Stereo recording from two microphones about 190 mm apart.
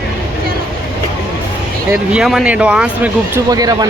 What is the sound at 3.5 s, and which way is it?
Speech, 20° right (ahead or behind).